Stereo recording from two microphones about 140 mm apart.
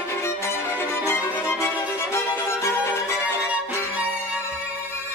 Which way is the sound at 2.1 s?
15° left (ahead or behind).